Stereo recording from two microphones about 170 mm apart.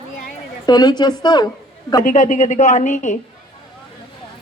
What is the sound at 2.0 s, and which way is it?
Speech, 45° left (ahead or behind).